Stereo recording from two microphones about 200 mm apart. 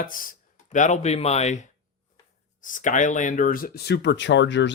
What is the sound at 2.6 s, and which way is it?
Speech, 40° left (ahead or behind).